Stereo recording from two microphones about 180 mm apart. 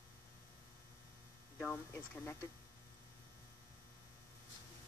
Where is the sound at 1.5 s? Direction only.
10° left (ahead or behind).